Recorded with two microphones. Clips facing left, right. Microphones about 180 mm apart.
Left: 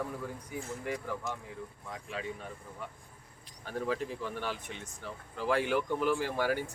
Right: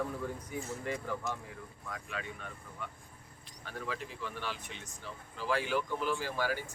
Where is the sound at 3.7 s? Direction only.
40° left (ahead or behind).